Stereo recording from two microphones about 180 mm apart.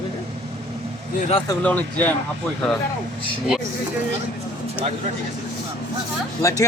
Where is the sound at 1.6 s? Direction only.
10° left (ahead or behind).